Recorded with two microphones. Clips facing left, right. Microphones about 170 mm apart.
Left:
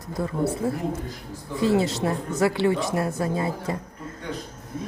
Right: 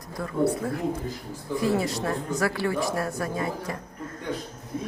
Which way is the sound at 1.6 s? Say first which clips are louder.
Left 4 dB; 25° left (ahead or behind).